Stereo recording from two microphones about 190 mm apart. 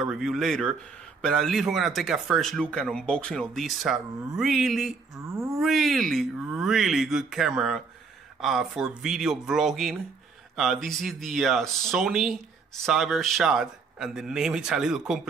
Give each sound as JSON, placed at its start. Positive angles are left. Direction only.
{"t": 0.0, "sound": "a man's voice", "side_deg": 0}
{"t": 5.3, "sound": "a sound", "side_deg": -15}
{"t": 5.6, "sound": "a man's voice", "side_deg": 0}